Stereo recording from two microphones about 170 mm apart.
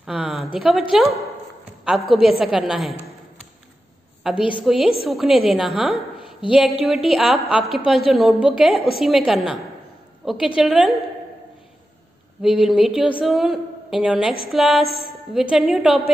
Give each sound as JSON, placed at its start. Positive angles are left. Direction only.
{"t": 0.0, "sound": "a sound", "side_deg": -5}
{"t": 0.6, "sound": "a woman's voice", "side_deg": 0}
{"t": 4.6, "sound": "a woman's voice", "side_deg": 0}
{"t": 6.1, "sound": "a sound", "side_deg": 30}
{"t": 6.8, "sound": "a woman's voice", "side_deg": 0}
{"t": 12.4, "sound": "a woman's voice", "side_deg": -5}
{"t": 14.9, "sound": "a woman's voice", "side_deg": 65}
{"t": 15.5, "sound": "a woman's voice", "side_deg": 0}